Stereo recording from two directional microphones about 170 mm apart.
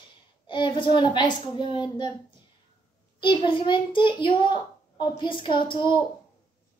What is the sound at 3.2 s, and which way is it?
A woman's voice, 30° left (ahead or behind).